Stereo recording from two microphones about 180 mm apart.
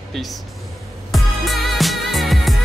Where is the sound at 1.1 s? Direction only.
Centre (ahead or behind).